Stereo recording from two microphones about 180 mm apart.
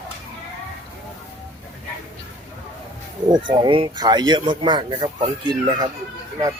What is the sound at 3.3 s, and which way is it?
Speech, 25° right (ahead or behind).